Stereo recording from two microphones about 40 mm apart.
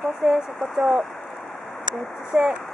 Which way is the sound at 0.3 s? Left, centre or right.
Centre.